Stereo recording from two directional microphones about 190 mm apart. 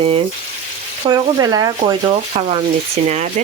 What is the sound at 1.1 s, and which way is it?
Speech, 20° right (ahead or behind).